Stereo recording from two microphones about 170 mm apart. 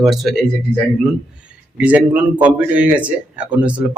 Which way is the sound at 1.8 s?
10° right (ahead or behind).